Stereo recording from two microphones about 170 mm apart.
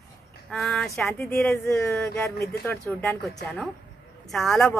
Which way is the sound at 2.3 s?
65° left (ahead or behind).